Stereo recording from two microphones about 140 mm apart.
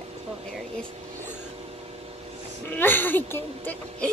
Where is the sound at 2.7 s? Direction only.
15° left (ahead or behind).